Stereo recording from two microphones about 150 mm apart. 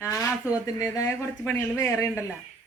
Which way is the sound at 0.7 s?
25° left (ahead or behind).